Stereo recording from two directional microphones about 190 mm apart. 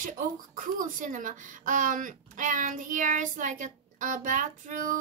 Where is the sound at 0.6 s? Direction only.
45° right (ahead or behind).